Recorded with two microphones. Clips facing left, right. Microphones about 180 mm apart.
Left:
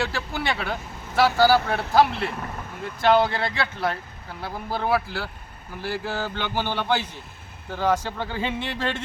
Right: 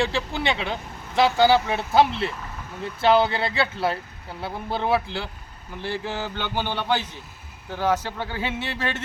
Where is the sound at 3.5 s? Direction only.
25° right (ahead or behind).